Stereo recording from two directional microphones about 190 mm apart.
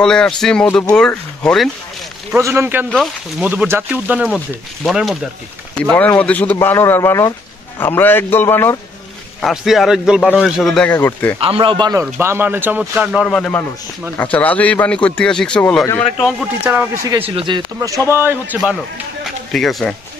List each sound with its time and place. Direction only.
0.0 s a man's voice: 5° left (ahead or behind)
2.3 s a man's voice: 15° right (ahead or behind)
2.9 s a man's voice: centre (ahead or behind)
9.4 s a man's voice: centre (ahead or behind)
11.4 s a man's voice: 25° right (ahead or behind); by 13.3 s 5° right (ahead or behind)
13.3 s a man's voice: 5° left (ahead or behind)
16.6 s a man's voice: 10° right (ahead or behind)
17.2 s speech: 25° right (ahead or behind)
17.7 s a man's voice: 15° right (ahead or behind)
18.6 s a man's voice: centre (ahead or behind)